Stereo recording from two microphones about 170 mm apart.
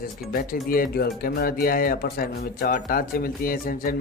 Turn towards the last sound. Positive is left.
turn(degrees=60)  # may be behind; listen again after turning